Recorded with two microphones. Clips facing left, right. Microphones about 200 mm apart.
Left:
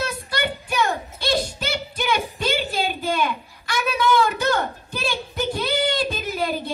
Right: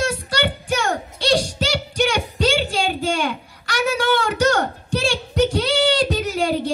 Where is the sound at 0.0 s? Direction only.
80° right.